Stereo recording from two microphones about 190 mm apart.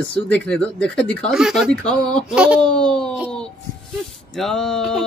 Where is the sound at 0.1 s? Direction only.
5° left (ahead or behind).